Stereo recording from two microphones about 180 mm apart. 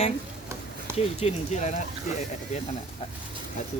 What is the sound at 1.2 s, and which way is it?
Speech, 40° left (ahead or behind).